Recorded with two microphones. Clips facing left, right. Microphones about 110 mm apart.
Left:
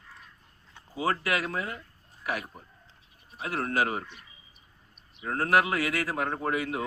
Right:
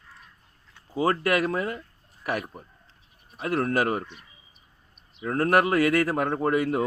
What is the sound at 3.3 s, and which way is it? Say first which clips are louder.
Speech: right 4 dB; 50° right (ahead or behind).